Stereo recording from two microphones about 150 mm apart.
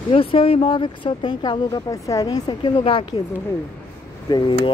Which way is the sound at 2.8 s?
40° left (ahead or behind).